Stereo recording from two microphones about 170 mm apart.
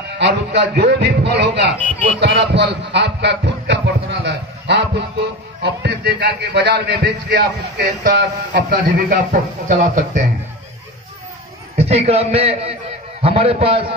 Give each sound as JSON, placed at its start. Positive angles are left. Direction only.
{"t": 0.2, "sound": "a man's voice", "side_deg": -80}
{"t": 2.1, "sound": "music", "side_deg": -80}
{"t": 5.6, "sound": "a man's voice", "side_deg": -80}
{"t": 9.3, "sound": "speech", "side_deg": -50}
{"t": 11.7, "sound": "a man's voice", "side_deg": -35}